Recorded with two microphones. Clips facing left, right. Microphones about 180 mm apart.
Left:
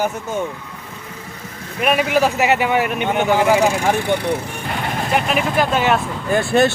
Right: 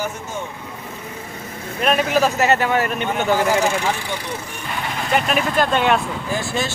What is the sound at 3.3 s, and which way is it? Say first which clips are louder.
Speech: left 3 dB; 60° left (ahead or behind).